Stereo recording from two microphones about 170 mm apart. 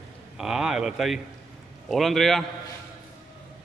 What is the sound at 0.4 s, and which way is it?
Speech, 5° right (ahead or behind).